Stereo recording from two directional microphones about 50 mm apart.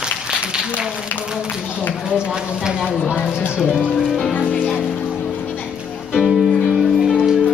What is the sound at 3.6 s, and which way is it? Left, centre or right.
Speech, left.